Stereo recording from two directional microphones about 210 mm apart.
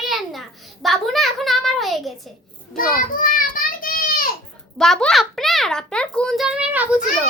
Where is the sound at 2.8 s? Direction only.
40° left (ahead or behind).